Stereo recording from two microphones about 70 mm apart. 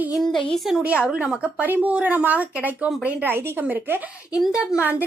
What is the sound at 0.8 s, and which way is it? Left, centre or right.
A woman's voice, centre.